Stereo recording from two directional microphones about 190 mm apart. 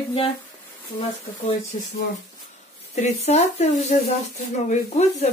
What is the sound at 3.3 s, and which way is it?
Speech, 35° left (ahead or behind).